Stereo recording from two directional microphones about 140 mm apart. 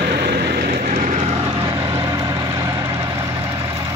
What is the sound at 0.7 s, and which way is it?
Vehicle, 90° right.